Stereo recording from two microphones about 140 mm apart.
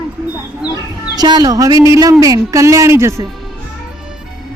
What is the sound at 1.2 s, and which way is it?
A woman's voice, 30° right (ahead or behind).